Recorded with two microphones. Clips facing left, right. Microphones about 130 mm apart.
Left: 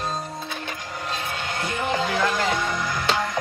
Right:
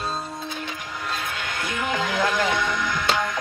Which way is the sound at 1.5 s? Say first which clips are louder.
Left 2 dB; 35° left (ahead or behind).